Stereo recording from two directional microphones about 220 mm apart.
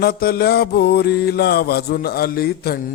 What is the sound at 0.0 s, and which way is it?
Mantra, 45° left (ahead or behind).